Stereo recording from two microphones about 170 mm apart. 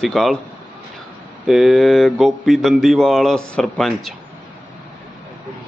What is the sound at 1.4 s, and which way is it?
Speech, centre (ahead or behind).